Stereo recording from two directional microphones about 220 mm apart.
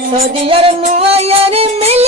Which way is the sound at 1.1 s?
25° right (ahead or behind).